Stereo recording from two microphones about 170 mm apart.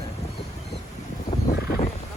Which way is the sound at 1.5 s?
60° left (ahead or behind).